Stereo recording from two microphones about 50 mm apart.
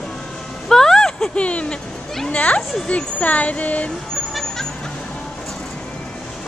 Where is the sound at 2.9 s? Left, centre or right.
Left.